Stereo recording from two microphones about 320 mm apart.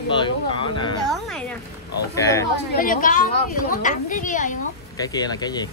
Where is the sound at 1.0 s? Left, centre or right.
Centre.